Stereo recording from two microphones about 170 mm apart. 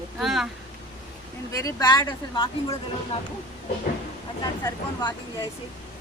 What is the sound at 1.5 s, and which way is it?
Speech, 20° left (ahead or behind).